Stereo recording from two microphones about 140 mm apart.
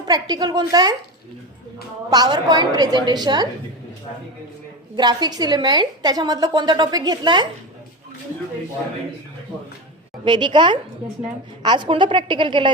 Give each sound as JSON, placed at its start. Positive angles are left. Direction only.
{"t": 0.0, "sound": "a woman's voice", "side_deg": -30}
{"t": 2.0, "sound": "a woman's voice", "side_deg": -30}
{"t": 4.9, "sound": "a woman's voice", "side_deg": -30}
{"t": 10.2, "sound": "a woman's voice", "side_deg": -35}